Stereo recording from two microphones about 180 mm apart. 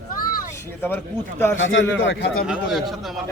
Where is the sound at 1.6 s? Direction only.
90° left.